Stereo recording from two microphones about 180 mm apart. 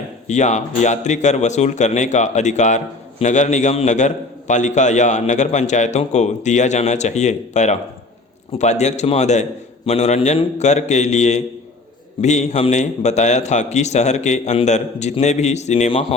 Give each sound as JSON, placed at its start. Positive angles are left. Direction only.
{"t": 0.3, "sound": "a man's voice", "side_deg": 40}